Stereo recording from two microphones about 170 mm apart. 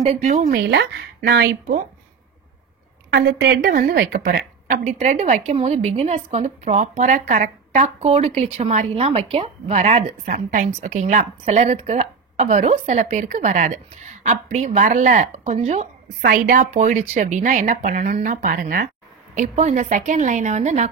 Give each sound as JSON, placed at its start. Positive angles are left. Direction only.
{"t": 0.0, "sound": "speech", "side_deg": -40}
{"t": 0.5, "sound": "speech", "side_deg": -75}
{"t": 3.1, "sound": "a woman's voice", "side_deg": -70}
{"t": 16.2, "sound": "a woman's voice", "side_deg": -55}